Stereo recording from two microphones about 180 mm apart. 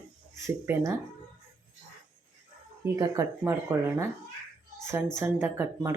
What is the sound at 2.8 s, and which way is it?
Speech, 20° right (ahead or behind).